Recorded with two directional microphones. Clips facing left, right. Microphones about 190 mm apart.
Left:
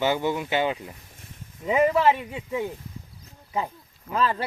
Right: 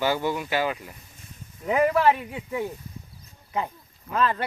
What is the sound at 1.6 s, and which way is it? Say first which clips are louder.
Speech: even; centre (ahead or behind).